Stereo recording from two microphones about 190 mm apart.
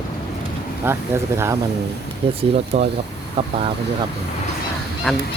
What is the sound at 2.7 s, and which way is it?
Speech, 35° right (ahead or behind).